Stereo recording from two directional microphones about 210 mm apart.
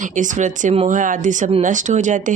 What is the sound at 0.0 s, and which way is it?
A woman's voice, 35° right (ahead or behind).